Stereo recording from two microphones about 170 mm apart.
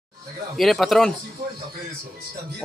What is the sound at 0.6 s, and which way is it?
Speech, centre (ahead or behind).